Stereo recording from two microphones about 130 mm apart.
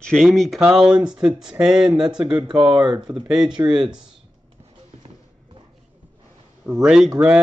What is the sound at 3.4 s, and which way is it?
Speech, 35° right (ahead or behind).